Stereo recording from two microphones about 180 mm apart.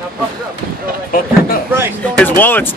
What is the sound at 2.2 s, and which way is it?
Speech, 10° left (ahead or behind).